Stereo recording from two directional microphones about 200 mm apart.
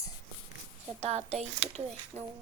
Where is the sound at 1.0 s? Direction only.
30° right (ahead or behind).